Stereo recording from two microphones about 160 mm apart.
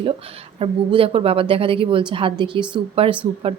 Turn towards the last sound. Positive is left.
turn(degrees=-35)  # may be behind; listen again after turning